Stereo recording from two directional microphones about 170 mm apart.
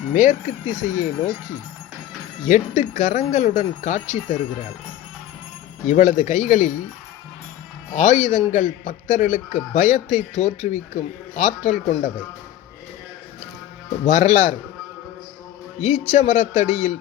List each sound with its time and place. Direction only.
0.1 s a man's voice: 50° left (ahead or behind)
2.4 s a man's voice: 45° left (ahead or behind)
5.9 s a man's voice: 45° left (ahead or behind)
7.9 s a man's voice: 45° left (ahead or behind)
14.1 s a man's voice: 45° left (ahead or behind)
15.8 s a man's voice: 45° left (ahead or behind)